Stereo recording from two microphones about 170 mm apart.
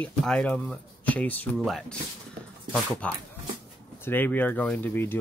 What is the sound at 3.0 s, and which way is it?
Speech, 5° left (ahead or behind).